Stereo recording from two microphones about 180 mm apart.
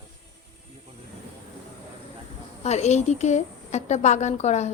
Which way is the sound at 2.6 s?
40° left (ahead or behind).